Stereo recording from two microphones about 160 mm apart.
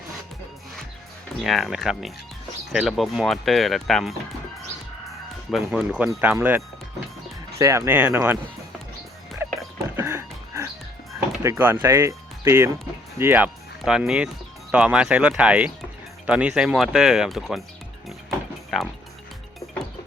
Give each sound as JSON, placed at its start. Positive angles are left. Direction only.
{"t": 1.5, "sound": "speech", "side_deg": 0}
{"t": 5.5, "sound": "speech", "side_deg": 0}
{"t": 7.6, "sound": "speech", "side_deg": -20}
{"t": 9.4, "sound": "music", "side_deg": -15}
{"t": 11.4, "sound": "speech", "side_deg": -15}
{"t": 18.7, "sound": "music", "side_deg": 0}